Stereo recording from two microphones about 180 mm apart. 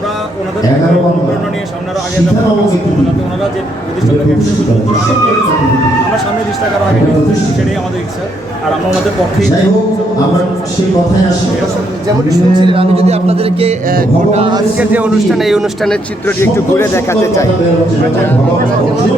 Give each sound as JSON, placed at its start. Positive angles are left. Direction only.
{"t": 12.3, "sound": "a man's voice", "side_deg": -30}
{"t": 14.8, "sound": "speech", "side_deg": -5}
{"t": 16.2, "sound": "a man's voice", "side_deg": 15}